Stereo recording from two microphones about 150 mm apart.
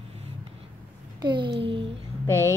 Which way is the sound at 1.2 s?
30° right (ahead or behind).